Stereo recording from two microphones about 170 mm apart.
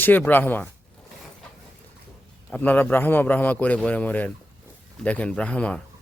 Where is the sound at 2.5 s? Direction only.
10° left (ahead or behind).